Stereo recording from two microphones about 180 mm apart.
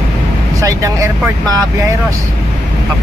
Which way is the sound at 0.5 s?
20° right (ahead or behind).